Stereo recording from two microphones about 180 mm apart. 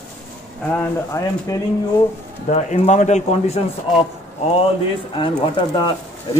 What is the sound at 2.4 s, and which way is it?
A man's voice, 35° left (ahead or behind).